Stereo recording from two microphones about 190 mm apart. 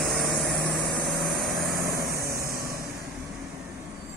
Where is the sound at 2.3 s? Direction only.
15° right (ahead or behind).